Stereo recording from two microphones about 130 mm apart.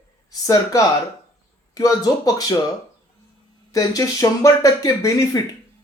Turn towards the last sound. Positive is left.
turn(degrees=25)  # may be behind; listen again after turning